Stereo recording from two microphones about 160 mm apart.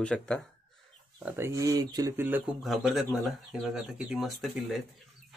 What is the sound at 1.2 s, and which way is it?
Speech, 15° right (ahead or behind).